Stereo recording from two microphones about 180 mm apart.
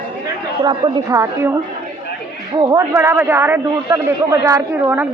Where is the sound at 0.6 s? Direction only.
25° right (ahead or behind).